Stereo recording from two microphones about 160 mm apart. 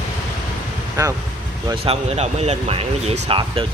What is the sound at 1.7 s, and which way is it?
Speech, 35° right (ahead or behind).